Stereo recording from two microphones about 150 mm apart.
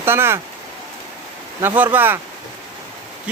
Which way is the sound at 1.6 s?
15° right (ahead or behind).